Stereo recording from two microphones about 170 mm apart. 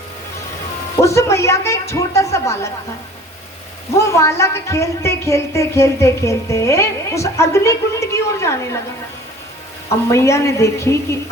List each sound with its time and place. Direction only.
0.9 s speech: 15° left (ahead or behind)
3.9 s speech: 15° left (ahead or behind)
10.1 s speech: 15° left (ahead or behind)